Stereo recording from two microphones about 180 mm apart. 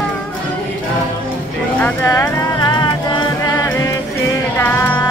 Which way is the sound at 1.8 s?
20° left (ahead or behind).